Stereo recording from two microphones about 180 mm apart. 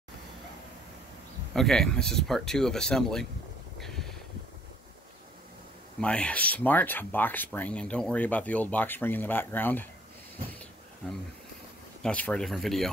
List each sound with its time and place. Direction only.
1.5 s speech: centre (ahead or behind)
3.8 s vehicle: centre (ahead or behind)
5.9 s speech: 5° left (ahead or behind)
10.5 s a sound: 10° left (ahead or behind)
12.0 s speech: 5° left (ahead or behind)